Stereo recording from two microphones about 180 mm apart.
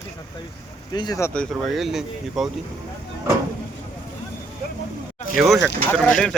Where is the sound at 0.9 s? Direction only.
20° left (ahead or behind).